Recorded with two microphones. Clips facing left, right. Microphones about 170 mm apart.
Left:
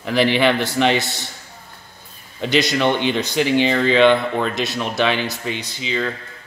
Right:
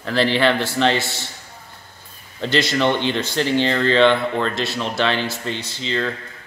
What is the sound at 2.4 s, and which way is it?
Speech, 15° left (ahead or behind).